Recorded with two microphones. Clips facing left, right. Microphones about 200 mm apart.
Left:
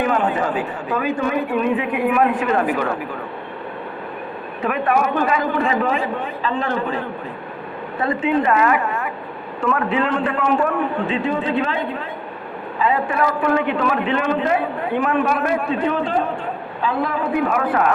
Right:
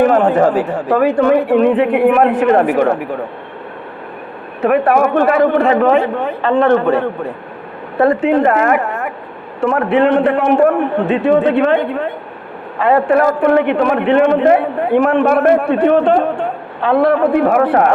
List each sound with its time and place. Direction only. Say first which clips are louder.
0.0 s a woman's voice: right 9 dB; 50° right (ahead or behind)
0.9 s a man's voice: right 10 dB; 65° right (ahead or behind); by 2.9 s 50° right (ahead or behind)
4.6 s a man's voice: right 7 dB; 60° right (ahead or behind)
8.2 s a woman's voice: right 5 dB; 55° right (ahead or behind)
9.6 s a man's voice: right 7 dB; 60° right (ahead or behind)